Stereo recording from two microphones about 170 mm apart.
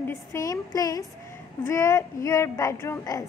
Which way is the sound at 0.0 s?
15° left (ahead or behind).